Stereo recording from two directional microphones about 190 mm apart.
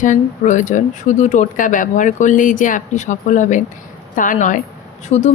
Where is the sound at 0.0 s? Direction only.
40° left (ahead or behind).